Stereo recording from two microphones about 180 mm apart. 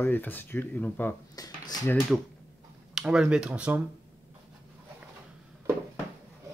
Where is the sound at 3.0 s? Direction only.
5° right (ahead or behind).